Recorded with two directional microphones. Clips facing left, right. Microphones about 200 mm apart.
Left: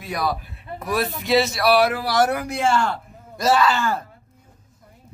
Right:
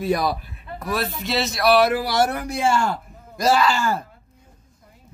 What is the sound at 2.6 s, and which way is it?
Speech, 10° right (ahead or behind).